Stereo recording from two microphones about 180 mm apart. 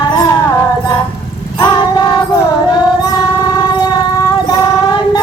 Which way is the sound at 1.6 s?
25° left (ahead or behind).